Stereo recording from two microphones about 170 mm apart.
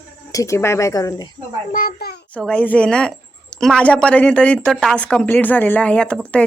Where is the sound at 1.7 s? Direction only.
65° left (ahead or behind).